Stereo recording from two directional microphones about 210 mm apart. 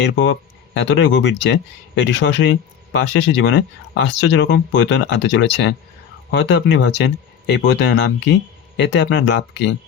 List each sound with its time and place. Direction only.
0.0 s speech: 60° left (ahead or behind)